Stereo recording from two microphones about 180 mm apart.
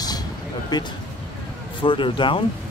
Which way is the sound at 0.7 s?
25° left (ahead or behind).